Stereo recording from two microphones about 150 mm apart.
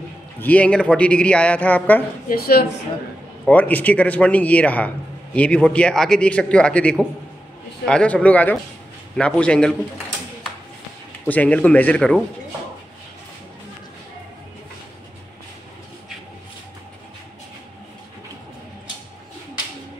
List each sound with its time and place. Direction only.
0.4 s a man's voice: 10° left (ahead or behind)
2.2 s speech: 90° left
3.4 s a man's voice: 10° left (ahead or behind)
11.2 s a man's voice: 10° left (ahead or behind)